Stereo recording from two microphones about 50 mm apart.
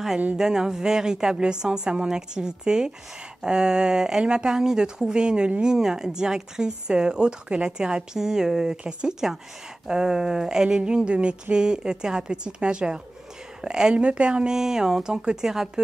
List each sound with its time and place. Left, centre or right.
0.4 s speech: centre